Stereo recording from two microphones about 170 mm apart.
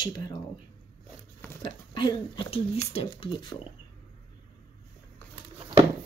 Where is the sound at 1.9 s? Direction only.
25° left (ahead or behind).